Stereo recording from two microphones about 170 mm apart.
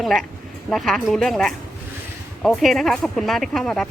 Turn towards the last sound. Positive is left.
turn(degrees=5)  # may be behind; listen again after turning